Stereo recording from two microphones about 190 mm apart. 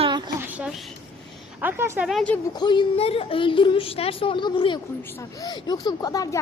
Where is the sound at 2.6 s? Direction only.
25° left (ahead or behind).